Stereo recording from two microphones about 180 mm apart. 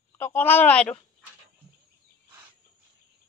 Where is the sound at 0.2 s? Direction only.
10° left (ahead or behind).